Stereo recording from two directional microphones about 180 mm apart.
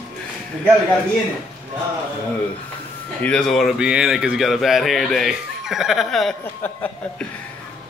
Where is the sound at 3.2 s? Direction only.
5° left (ahead or behind).